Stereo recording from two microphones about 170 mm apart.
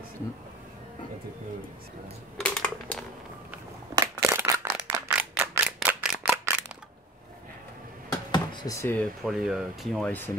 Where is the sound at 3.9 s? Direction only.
20° right (ahead or behind).